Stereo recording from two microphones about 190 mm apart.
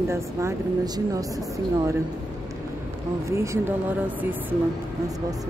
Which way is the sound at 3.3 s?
15° right (ahead or behind).